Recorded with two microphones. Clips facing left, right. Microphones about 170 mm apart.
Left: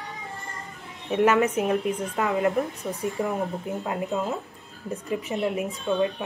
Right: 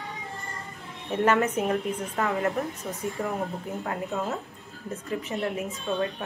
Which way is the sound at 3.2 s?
10° left (ahead or behind).